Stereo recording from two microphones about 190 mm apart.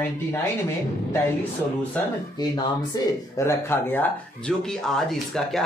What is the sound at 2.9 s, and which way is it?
Speech, 20° left (ahead or behind).